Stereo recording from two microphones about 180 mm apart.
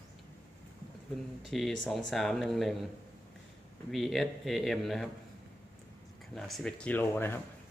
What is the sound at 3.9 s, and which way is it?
Speech, centre (ahead or behind).